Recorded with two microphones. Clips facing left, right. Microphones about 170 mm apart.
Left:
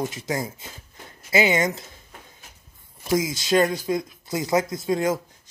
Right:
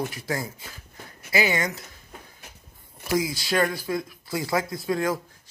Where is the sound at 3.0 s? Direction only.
20° left (ahead or behind).